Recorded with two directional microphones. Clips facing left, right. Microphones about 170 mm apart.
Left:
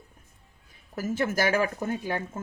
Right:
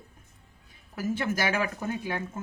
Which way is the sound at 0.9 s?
45° left (ahead or behind).